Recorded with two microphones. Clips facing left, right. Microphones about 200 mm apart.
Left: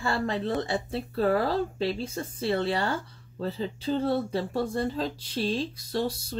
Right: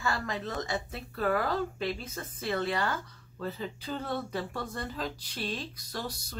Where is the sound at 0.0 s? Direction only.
30° left (ahead or behind).